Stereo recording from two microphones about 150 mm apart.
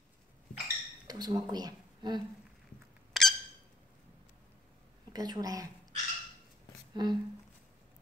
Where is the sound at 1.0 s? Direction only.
25° right (ahead or behind).